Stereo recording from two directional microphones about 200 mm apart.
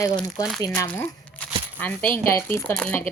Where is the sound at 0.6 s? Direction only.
15° left (ahead or behind).